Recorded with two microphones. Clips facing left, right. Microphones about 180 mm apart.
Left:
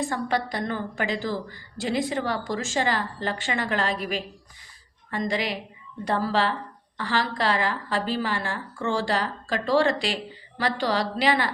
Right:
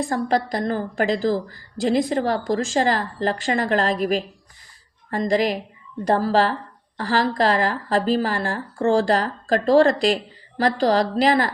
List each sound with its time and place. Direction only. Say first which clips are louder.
0.0 s a woman's voice: right 5 dB; 35° right (ahead or behind)